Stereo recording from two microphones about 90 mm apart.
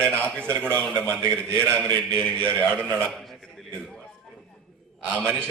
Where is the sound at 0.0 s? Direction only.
15° left (ahead or behind).